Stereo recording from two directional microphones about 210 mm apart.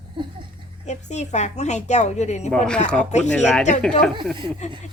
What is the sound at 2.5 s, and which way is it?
Speech, 5° left (ahead or behind).